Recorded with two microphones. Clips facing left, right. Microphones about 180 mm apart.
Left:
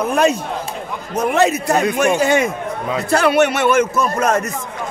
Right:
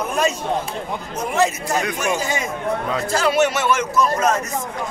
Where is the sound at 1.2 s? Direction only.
65° left (ahead or behind).